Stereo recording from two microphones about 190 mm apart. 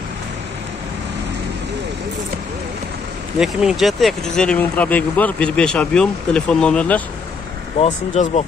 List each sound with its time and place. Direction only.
3.3 s speech: centre (ahead or behind)
7.8 s speech: 35° left (ahead or behind)